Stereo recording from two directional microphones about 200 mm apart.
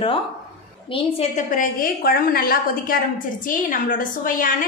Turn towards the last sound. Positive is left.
turn(degrees=45)  # may be behind; listen again after turning